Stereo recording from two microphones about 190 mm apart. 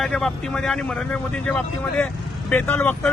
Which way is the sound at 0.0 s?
Centre (ahead or behind).